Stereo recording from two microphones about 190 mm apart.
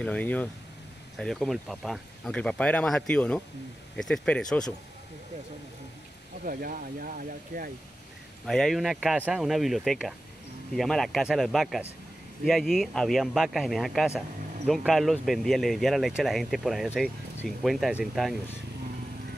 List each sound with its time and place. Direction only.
0.0 s speech: 5° left (ahead or behind)
6.4 s speech: 45° right (ahead or behind)
8.5 s speech: centre (ahead or behind)